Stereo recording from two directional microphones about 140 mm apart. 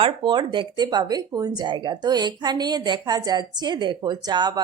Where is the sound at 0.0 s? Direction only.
35° right (ahead or behind).